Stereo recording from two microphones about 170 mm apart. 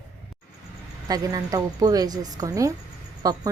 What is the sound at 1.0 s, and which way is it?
Speech, 20° right (ahead or behind).